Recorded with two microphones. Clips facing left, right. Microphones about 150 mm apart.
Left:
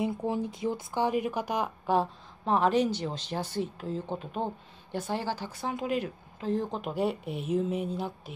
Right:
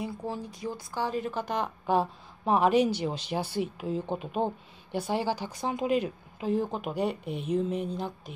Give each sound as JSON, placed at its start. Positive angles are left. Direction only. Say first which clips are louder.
{"t": 0.0, "sound": "speech", "louder": "left 5 dB", "side_deg": 20}
{"t": 2.4, "sound": "a woman's voice", "louder": "right 2 dB", "side_deg": -10}
{"t": 6.5, "sound": "speech", "louder": "right 1 dB", "side_deg": -5}